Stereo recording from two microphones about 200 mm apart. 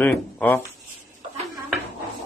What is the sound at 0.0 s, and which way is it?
Speech, 10° left (ahead or behind).